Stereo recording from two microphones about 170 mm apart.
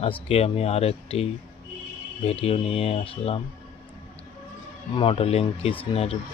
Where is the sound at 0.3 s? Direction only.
35° left (ahead or behind).